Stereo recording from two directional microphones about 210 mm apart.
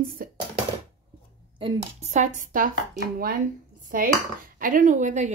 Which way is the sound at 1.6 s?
30° right (ahead or behind).